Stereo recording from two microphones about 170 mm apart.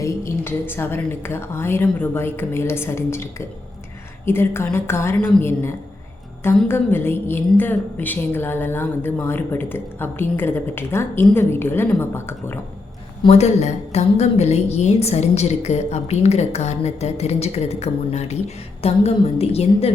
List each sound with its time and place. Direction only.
0.0 s a woman's voice: 15° left (ahead or behind)
13.2 s a woman's voice: 40° left (ahead or behind)